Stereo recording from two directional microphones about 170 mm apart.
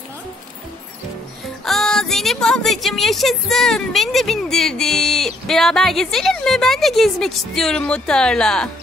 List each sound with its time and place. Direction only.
1.7 s speech: centre (ahead or behind)